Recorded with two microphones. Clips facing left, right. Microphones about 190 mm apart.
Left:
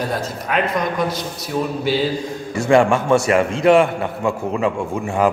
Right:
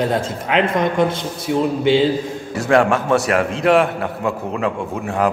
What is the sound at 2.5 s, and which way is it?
A man's voice, centre (ahead or behind).